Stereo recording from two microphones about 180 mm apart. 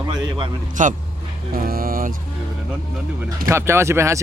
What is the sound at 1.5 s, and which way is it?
Vehicle, 55° right (ahead or behind).